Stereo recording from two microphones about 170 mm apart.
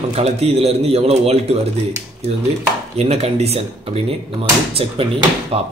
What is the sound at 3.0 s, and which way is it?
Speech, 35° right (ahead or behind).